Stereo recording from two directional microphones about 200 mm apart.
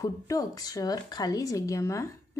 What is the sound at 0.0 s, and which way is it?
A woman's voice, 15° left (ahead or behind).